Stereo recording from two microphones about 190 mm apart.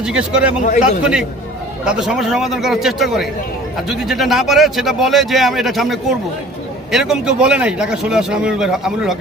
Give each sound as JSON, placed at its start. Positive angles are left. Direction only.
{"t": 0.0, "sound": "speech", "side_deg": -5}
{"t": 0.6, "sound": "a man's voice", "side_deg": 40}
{"t": 1.8, "sound": "speech", "side_deg": -5}